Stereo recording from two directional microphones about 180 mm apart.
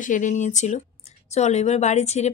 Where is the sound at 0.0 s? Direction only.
45° left (ahead or behind).